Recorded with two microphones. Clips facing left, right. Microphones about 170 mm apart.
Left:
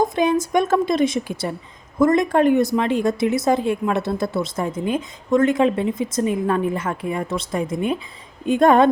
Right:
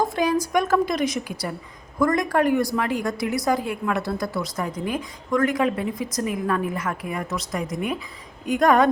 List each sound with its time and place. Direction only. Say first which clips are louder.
0.0 s a woman's voice: left 3 dB; 20° left (ahead or behind)